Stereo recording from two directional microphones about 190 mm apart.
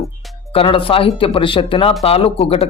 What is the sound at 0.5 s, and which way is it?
Speech, 30° left (ahead or behind).